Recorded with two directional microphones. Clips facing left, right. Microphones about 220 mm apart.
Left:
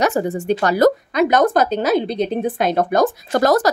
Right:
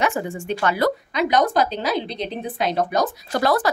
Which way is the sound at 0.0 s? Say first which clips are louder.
Left 5 dB; 40° left (ahead or behind).